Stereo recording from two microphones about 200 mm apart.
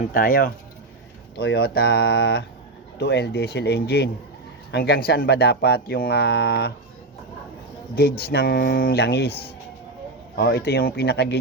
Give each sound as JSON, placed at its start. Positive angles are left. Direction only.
{"t": 0.0, "sound": "speech", "side_deg": 45}
{"t": 7.9, "sound": "speech", "side_deg": 50}
{"t": 10.3, "sound": "speech", "side_deg": 55}